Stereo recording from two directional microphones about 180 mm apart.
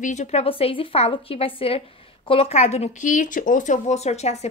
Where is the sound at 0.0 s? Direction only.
40° left (ahead or behind).